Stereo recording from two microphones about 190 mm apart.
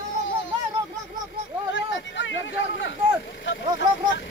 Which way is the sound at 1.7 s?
70° left (ahead or behind).